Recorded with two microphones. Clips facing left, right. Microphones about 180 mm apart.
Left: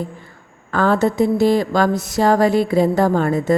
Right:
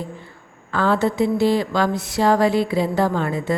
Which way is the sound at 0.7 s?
45° left (ahead or behind).